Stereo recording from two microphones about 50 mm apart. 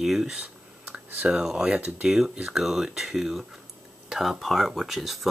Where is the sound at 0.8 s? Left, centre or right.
Right.